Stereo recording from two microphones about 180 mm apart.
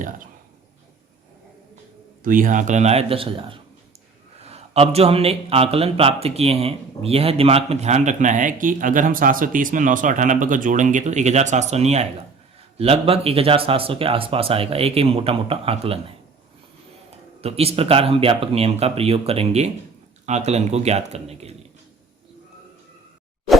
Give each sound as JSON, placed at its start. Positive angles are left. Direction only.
{"t": 2.2, "sound": "speech", "side_deg": -50}